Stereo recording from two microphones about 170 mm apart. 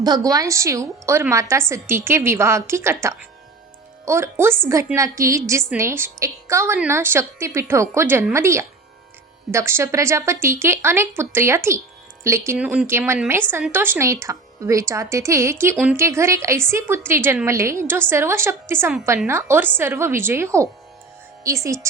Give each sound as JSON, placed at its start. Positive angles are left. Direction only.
{"t": 0.0, "sound": "speech", "side_deg": -20}